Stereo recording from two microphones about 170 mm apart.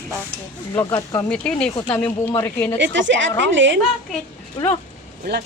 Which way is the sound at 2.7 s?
90° right.